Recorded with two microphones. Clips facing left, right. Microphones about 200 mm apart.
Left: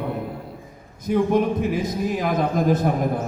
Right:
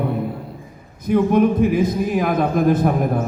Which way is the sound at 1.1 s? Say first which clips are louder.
Right 4 dB; 55° right (ahead or behind).